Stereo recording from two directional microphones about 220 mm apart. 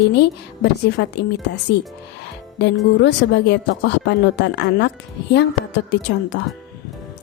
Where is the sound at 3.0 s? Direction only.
50° left (ahead or behind).